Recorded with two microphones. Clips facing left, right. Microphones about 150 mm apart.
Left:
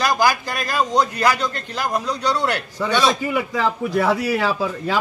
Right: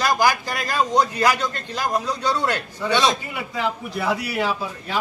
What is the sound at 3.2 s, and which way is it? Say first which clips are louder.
A man's voice: left 5 dB; 90° left.